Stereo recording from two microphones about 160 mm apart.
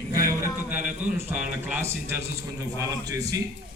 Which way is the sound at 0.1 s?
20° right (ahead or behind).